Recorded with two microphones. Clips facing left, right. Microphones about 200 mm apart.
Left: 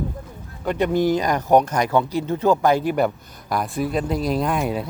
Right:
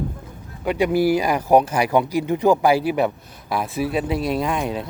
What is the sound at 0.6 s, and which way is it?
Speech, 10° right (ahead or behind).